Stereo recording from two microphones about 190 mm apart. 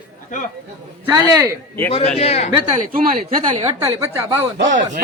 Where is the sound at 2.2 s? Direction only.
35° left (ahead or behind).